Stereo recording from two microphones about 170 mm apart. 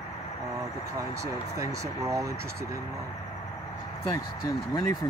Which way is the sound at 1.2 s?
20° right (ahead or behind).